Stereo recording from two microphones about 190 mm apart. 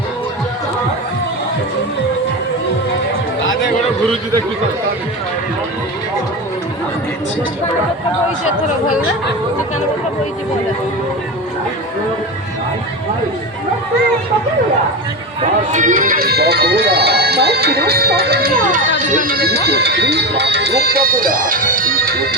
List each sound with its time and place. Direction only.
15.4 s speech: 40° right (ahead or behind)
19.3 s speech: 55° right (ahead or behind)